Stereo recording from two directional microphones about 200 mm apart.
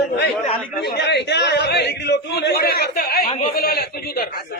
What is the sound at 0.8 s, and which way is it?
A man's voice, 55° left (ahead or behind).